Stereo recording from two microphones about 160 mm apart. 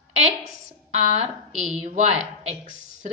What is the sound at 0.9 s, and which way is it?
A woman's voice, 40° right (ahead or behind).